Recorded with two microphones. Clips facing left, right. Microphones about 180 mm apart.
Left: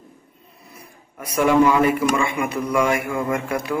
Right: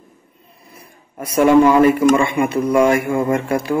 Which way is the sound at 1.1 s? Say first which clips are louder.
Right 5 dB; 25° right (ahead or behind).